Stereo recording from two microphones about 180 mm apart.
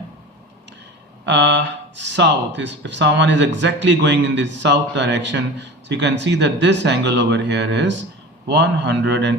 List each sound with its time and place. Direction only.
1.2 s speech: 80° right